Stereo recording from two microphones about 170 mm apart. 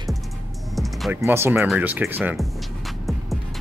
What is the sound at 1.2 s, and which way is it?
Speech, 15° right (ahead or behind).